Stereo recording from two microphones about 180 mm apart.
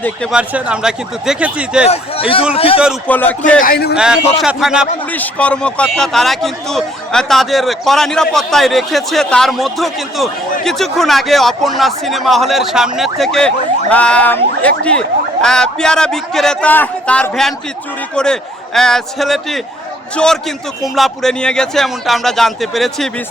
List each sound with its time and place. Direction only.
0.3 s speech: 5° right (ahead or behind)
1.9 s speech: 30° left (ahead or behind)
3.1 s speech: 10° left (ahead or behind)
3.6 s a man's voice: 55° left (ahead or behind)
3.9 s speech: 5° right (ahead or behind)
5.1 s speech: 10° left (ahead or behind)